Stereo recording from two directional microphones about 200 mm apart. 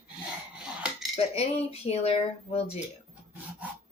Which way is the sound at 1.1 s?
30° left (ahead or behind).